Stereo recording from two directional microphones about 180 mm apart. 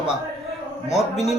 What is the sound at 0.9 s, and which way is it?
Speech, 35° left (ahead or behind).